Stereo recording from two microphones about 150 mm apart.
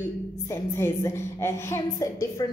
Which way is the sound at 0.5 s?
20° left (ahead or behind).